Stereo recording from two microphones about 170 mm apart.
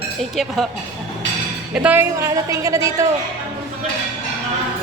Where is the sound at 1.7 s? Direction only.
10° right (ahead or behind).